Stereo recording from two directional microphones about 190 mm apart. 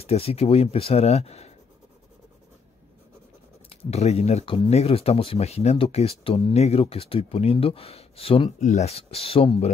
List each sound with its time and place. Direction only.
0.0 s speech: 30° left (ahead or behind)
3.9 s speech: 35° left (ahead or behind)